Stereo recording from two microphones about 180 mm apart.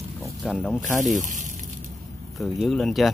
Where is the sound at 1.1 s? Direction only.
40° right (ahead or behind).